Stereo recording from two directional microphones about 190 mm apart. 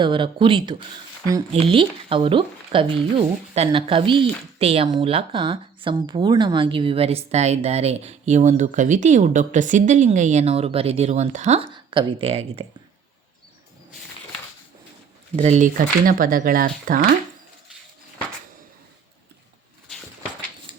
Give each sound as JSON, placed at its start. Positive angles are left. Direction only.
{"t": 0.0, "sound": "speech", "side_deg": -25}
{"t": 15.4, "sound": "speech", "side_deg": -35}
{"t": 20.7, "sound": "a sound", "side_deg": -25}